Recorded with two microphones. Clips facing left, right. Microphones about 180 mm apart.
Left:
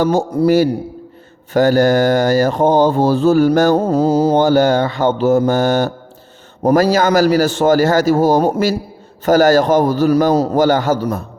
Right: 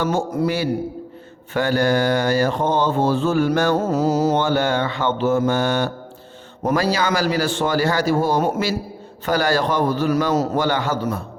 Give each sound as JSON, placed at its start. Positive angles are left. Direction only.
{"t": 0.0, "sound": "a man's voice", "side_deg": 35}